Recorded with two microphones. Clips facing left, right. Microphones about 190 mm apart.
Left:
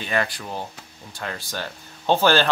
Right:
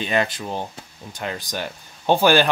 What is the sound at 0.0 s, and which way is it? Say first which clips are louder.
Speech: right 3 dB; 20° right (ahead or behind).